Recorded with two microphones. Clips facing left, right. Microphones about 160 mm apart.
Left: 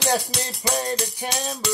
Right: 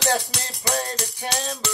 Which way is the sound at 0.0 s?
15° left (ahead or behind).